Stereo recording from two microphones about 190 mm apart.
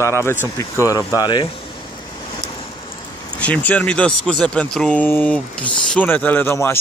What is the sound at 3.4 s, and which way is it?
Speech, 10° left (ahead or behind).